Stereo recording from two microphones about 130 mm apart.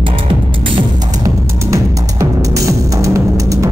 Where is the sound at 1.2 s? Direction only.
25° right (ahead or behind).